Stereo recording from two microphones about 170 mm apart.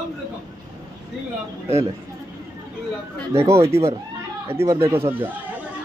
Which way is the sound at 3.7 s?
15° right (ahead or behind).